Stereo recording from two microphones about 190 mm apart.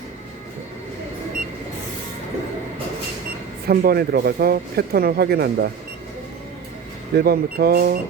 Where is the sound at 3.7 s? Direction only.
55° right (ahead or behind).